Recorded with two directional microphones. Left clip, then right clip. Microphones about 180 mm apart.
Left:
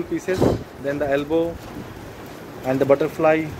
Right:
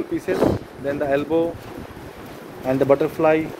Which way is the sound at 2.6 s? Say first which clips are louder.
Even; 5° right (ahead or behind).